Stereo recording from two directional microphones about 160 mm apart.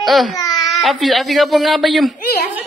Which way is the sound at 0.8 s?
Centre (ahead or behind).